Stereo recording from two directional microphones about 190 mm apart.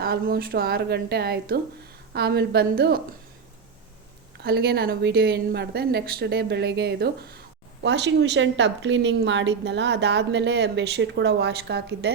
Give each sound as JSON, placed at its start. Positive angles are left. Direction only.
{"t": 0.0, "sound": "a woman's voice", "side_deg": -55}
{"t": 4.4, "sound": "a woman's voice", "side_deg": -60}